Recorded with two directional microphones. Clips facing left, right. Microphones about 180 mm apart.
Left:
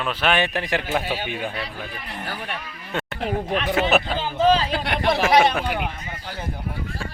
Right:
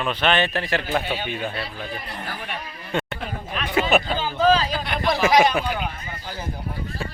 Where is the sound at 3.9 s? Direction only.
Centre (ahead or behind).